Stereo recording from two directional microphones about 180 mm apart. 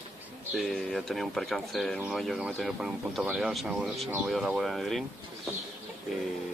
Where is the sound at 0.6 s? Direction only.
Centre (ahead or behind).